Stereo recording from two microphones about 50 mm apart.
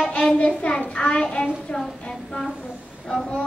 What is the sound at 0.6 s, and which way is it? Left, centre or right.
A child's voice, left.